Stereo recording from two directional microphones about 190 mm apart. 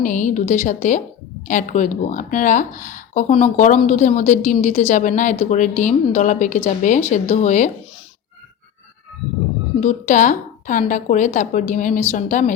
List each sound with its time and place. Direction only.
0.0 s speech: 40° left (ahead or behind)
9.8 s speech: 40° left (ahead or behind)